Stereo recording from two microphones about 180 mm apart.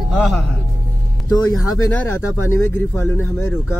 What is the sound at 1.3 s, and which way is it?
Speech, 20° left (ahead or behind).